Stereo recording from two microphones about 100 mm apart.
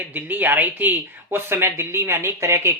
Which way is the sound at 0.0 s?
20° right (ahead or behind).